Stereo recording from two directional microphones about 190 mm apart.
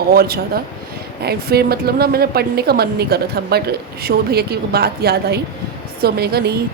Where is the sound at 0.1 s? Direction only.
55° right (ahead or behind).